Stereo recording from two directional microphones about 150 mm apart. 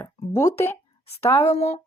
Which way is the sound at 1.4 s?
45° left (ahead or behind).